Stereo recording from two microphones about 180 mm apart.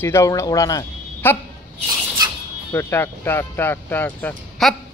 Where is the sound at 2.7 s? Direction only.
15° left (ahead or behind).